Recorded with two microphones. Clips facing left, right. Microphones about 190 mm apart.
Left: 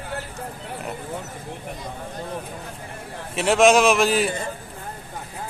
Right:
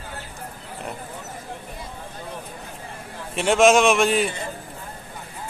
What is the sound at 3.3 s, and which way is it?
A man's voice, centre (ahead or behind).